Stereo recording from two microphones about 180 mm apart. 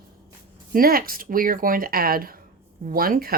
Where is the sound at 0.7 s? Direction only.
55° right (ahead or behind).